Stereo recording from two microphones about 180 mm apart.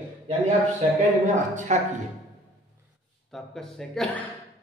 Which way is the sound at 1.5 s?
45° right (ahead or behind).